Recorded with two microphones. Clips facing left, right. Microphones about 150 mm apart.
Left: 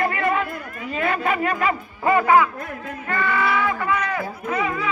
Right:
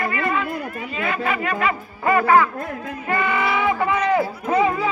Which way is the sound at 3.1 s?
20° right (ahead or behind).